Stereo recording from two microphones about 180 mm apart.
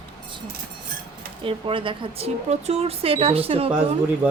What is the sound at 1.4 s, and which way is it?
Speech, 30° right (ahead or behind).